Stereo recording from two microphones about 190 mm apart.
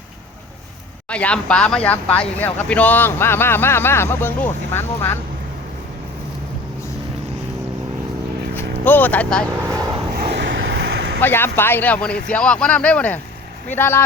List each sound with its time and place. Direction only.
1.1 s speech: 5° left (ahead or behind)
8.5 s speech: 10° left (ahead or behind)
10.2 s vehicle: 65° right (ahead or behind)
11.2 s speech: 10° left (ahead or behind)